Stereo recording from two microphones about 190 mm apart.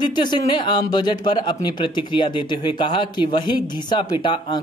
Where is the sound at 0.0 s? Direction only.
25° left (ahead or behind).